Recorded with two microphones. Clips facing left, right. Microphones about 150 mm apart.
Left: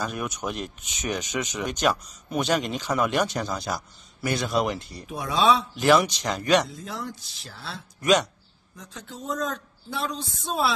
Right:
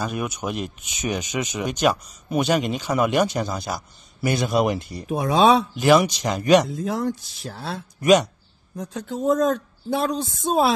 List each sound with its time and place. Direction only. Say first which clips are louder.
0.0 s speech: right 3 dB; 5° right (ahead or behind)
5.0 s speech: right 5 dB; 50° right (ahead or behind)
5.8 s speech: right 3 dB; 10° right (ahead or behind)
6.7 s speech: right 10 dB; 55° right (ahead or behind)
8.0 s speech: right 5 dB; 10° right (ahead or behind)
8.7 s speech: right 11 dB; 50° right (ahead or behind)